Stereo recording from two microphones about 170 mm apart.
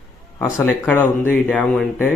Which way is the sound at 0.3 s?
10° left (ahead or behind).